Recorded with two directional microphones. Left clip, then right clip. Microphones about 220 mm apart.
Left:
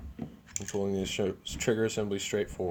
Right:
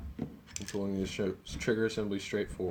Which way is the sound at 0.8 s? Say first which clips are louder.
Left 4 dB; 45° left (ahead or behind).